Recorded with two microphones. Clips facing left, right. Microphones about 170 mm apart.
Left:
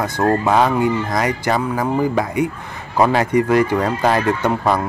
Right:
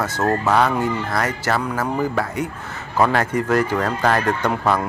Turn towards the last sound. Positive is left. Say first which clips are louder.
# left 2 dB
turn(degrees=10)  # may be behind; listen again after turning